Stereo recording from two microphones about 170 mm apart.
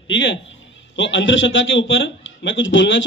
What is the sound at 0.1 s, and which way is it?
A man's voice, 90° left.